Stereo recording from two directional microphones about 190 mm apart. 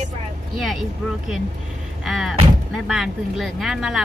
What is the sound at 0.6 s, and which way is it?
A woman's voice, centre (ahead or behind).